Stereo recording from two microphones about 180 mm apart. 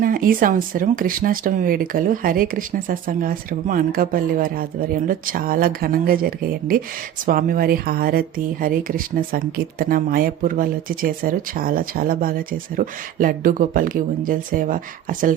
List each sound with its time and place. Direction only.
0.0 s speech: 50° right (ahead or behind)